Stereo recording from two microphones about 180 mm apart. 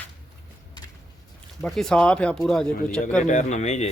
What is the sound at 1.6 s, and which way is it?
Speech, centre (ahead or behind).